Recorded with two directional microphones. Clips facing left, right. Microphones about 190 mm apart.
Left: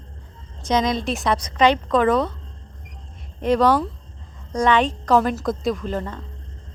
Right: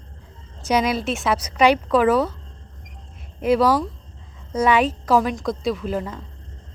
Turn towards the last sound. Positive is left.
turn(degrees=-10)  # may be behind; listen again after turning